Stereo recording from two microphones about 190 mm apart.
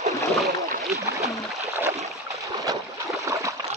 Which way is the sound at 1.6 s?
15° right (ahead or behind).